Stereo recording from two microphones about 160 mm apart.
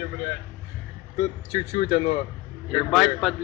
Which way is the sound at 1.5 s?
45° left (ahead or behind).